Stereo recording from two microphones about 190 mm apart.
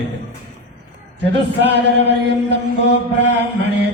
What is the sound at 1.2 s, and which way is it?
Mantra, 65° right (ahead or behind).